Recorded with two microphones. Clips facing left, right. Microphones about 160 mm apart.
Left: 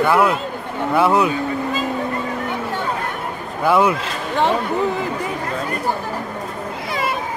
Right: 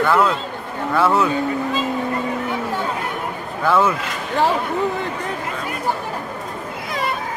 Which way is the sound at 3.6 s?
15° left (ahead or behind).